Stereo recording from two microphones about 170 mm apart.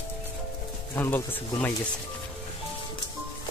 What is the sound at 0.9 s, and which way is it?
Speech, 10° left (ahead or behind).